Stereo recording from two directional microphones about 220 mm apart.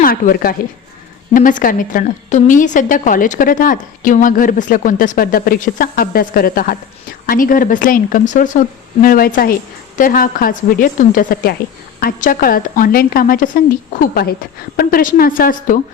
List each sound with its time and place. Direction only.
0.0 s a woman's voice: 40° left (ahead or behind)